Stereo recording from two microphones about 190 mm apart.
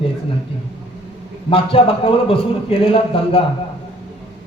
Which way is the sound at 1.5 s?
30° left (ahead or behind).